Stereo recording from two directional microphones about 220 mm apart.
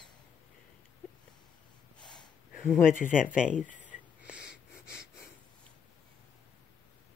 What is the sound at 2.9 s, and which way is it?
Speech, 40° left (ahead or behind).